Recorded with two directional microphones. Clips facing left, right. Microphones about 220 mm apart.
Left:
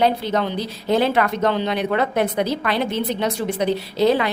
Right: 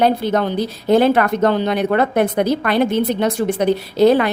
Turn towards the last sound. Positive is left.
turn(degrees=-50)  # may be behind; listen again after turning